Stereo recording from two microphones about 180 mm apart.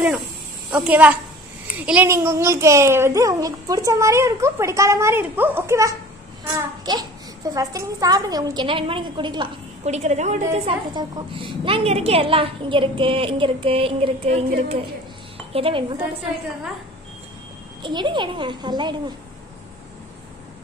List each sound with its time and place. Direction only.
0.7 s a woman's voice: 10° right (ahead or behind); by 9.5 s 25° right (ahead or behind)
9.8 s a woman's voice: 40° right (ahead or behind)
17.8 s a woman's voice: 25° right (ahead or behind)